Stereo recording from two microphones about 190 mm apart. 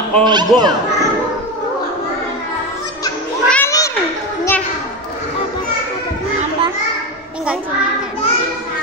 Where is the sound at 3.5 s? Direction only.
15° left (ahead or behind).